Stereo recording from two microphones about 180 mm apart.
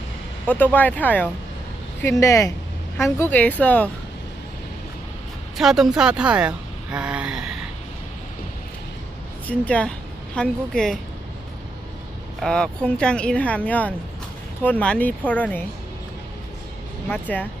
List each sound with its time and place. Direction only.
0.4 s speech: 10° left (ahead or behind)
5.5 s speech: centre (ahead or behind)
9.5 s speech: 5° left (ahead or behind)
12.4 s speech: 5° left (ahead or behind)
17.1 s speech: 10° left (ahead or behind)